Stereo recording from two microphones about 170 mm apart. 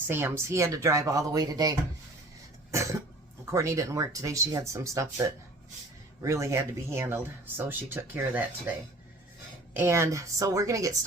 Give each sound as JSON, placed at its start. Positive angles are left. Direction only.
{"t": 0.1, "sound": "speech", "side_deg": -15}
{"t": 3.5, "sound": "speech", "side_deg": -20}
{"t": 9.7, "sound": "speech", "side_deg": -15}